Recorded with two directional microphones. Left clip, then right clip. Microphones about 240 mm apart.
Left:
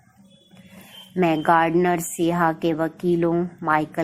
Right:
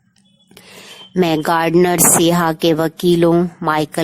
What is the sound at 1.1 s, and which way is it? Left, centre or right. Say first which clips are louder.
A woman's voice: right 3 dB; right.